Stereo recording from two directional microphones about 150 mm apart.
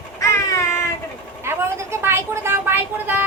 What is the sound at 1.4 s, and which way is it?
Speech, 15° right (ahead or behind).